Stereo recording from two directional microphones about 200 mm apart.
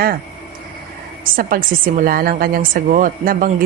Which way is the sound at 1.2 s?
45° right (ahead or behind).